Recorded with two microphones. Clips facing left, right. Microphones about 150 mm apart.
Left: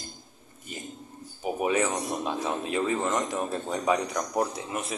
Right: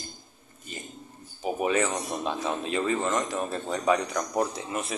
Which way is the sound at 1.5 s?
10° left (ahead or behind).